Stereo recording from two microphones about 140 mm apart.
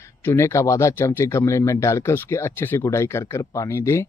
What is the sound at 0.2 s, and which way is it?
Speech, 20° left (ahead or behind).